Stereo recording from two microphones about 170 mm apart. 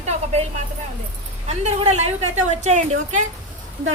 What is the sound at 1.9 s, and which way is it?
A woman's voice, 40° right (ahead or behind).